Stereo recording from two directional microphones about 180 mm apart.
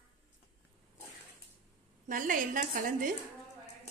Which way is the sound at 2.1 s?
50° right (ahead or behind).